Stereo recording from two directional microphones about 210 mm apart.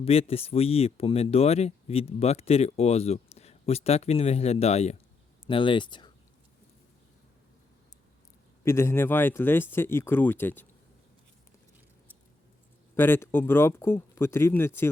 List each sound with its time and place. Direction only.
0.0 s speech: 30° left (ahead or behind)
8.6 s speech: 10° left (ahead or behind)
13.0 s speech: 10° left (ahead or behind)